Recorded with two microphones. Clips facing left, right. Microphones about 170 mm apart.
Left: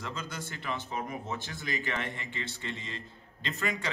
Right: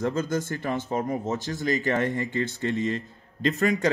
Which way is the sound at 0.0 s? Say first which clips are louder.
Right 13 dB; 45° right (ahead or behind).